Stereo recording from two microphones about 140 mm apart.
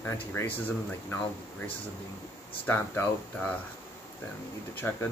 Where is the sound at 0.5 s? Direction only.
15° left (ahead or behind).